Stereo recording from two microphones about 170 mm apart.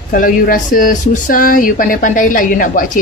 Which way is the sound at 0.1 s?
55° left (ahead or behind).